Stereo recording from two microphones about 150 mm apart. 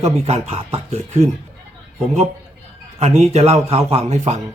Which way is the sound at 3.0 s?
45° right (ahead or behind).